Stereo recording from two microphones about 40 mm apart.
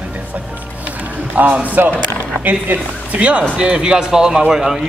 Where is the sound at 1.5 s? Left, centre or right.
Right.